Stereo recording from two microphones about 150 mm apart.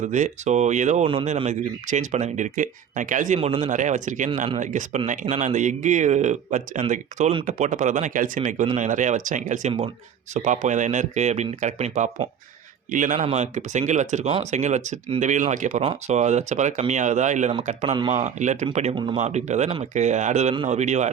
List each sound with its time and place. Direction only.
0.0 s speech: 55° right (ahead or behind)
13.1 s speech: 45° right (ahead or behind)